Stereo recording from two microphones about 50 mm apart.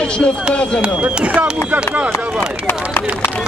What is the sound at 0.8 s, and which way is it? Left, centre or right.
Speech, right.